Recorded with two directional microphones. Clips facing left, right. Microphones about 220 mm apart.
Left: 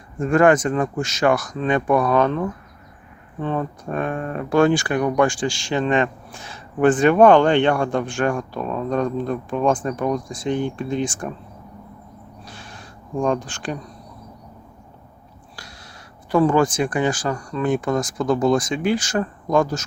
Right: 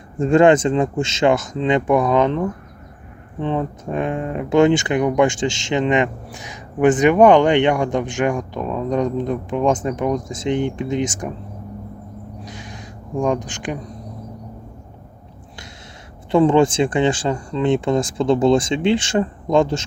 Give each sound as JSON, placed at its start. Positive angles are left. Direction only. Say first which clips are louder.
{"t": 0.2, "sound": "speech", "louder": "right 3 dB", "side_deg": -25}
{"t": 12.5, "sound": "crow", "louder": "right 5 dB", "side_deg": -15}
{"t": 13.2, "sound": "speech", "louder": "right 1 dB", "side_deg": -15}
{"t": 16.3, "sound": "speech", "louder": "right 3 dB", "side_deg": -25}